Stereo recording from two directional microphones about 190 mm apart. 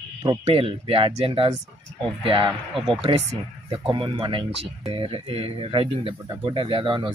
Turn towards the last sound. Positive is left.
turn(degrees=-25)  # may be behind; listen again after turning